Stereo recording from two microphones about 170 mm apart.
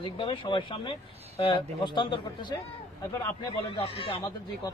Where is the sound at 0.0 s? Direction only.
30° left (ahead or behind).